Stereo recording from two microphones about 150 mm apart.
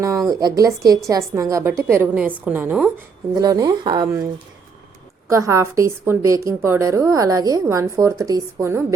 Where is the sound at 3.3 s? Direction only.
25° right (ahead or behind).